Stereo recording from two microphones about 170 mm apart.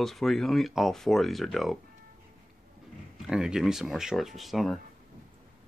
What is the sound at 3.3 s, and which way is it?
Speech, 5° right (ahead or behind).